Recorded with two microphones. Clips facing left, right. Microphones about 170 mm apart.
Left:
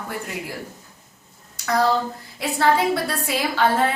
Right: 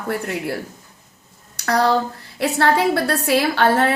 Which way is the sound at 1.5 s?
75° right (ahead or behind).